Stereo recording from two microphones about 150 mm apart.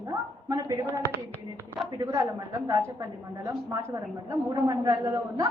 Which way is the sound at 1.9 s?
20° right (ahead or behind).